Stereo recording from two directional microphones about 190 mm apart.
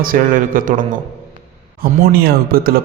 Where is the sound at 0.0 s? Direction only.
45° right (ahead or behind).